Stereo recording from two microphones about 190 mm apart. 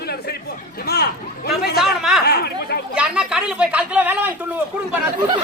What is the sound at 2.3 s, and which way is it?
Chatter, 55° left (ahead or behind).